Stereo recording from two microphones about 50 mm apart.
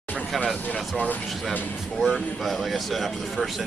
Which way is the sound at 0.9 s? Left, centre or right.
Left.